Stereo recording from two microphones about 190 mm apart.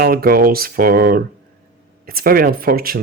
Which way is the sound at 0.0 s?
50° right (ahead or behind).